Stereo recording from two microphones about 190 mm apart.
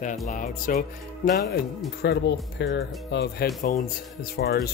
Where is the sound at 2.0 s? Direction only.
65° left (ahead or behind).